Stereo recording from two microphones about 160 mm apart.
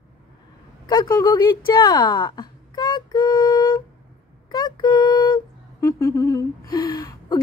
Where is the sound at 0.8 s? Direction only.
25° left (ahead or behind).